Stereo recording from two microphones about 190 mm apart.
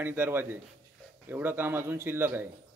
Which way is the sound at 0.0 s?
10° right (ahead or behind).